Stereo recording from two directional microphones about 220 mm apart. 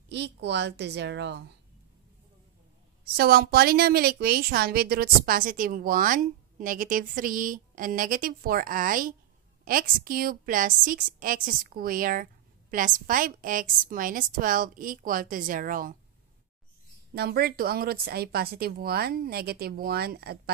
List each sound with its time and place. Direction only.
0.1 s speech: 50° right (ahead or behind)
3.2 s a woman's voice: 45° right (ahead or behind)
17.1 s speech: 45° right (ahead or behind)